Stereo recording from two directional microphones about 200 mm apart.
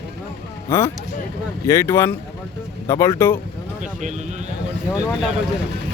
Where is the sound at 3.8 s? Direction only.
40° right (ahead or behind).